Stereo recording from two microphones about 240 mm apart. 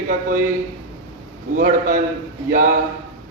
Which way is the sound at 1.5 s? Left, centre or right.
Right.